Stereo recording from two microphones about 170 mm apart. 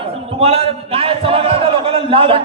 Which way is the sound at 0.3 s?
35° right (ahead or behind).